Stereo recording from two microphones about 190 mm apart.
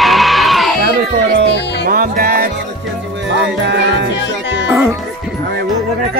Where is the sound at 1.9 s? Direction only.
50° right (ahead or behind).